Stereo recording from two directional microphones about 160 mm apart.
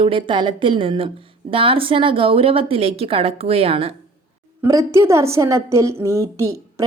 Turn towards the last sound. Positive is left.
turn(degrees=-20)  # may be behind; listen again after turning